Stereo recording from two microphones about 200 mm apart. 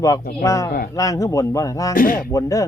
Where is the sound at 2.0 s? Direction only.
50° left (ahead or behind).